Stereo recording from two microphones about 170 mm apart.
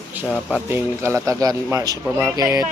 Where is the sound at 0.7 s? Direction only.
15° right (ahead or behind).